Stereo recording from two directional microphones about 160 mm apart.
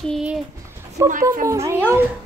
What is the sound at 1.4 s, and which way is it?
Speech, 20° right (ahead or behind).